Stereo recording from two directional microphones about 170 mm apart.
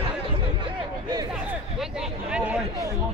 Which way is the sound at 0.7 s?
25° right (ahead or behind).